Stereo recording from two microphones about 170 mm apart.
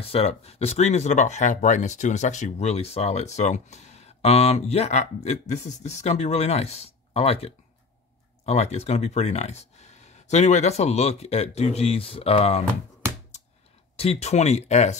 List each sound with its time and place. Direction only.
0.0 s speech: 35° left (ahead or behind)
13.9 s speech: 35° left (ahead or behind)